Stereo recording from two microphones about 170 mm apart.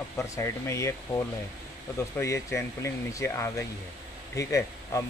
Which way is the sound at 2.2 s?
15° left (ahead or behind).